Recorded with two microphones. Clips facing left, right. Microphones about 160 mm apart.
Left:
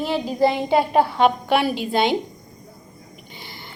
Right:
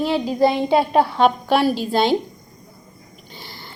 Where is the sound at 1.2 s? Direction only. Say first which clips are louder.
Right 2 dB; 40° right (ahead or behind).